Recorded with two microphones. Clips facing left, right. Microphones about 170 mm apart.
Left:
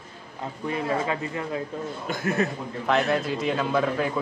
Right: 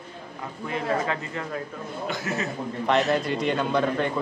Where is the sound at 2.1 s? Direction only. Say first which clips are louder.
Left 5 dB; 55° left (ahead or behind).